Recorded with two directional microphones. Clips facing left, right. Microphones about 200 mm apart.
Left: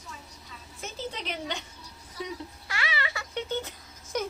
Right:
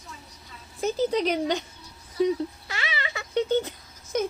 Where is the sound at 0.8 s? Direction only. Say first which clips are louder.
Right 13 dB; 40° right (ahead or behind).